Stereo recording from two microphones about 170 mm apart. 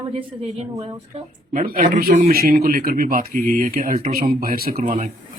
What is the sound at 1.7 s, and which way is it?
Speech, 55° right (ahead or behind).